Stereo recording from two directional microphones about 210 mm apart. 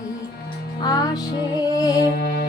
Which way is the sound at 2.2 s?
50° left (ahead or behind).